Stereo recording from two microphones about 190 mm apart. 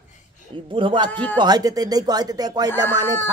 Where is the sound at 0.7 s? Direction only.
25° right (ahead or behind).